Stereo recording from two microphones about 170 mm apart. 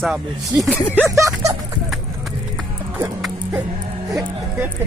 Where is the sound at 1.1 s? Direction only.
20° right (ahead or behind).